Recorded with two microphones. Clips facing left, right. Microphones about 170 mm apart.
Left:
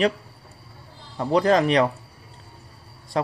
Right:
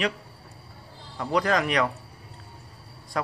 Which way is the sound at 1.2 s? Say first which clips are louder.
Left 6 dB; 30° left (ahead or behind).